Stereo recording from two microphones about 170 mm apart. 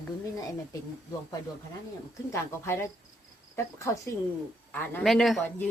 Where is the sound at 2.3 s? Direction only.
15° left (ahead or behind).